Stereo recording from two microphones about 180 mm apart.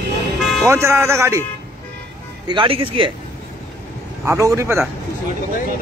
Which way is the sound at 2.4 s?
30° right (ahead or behind).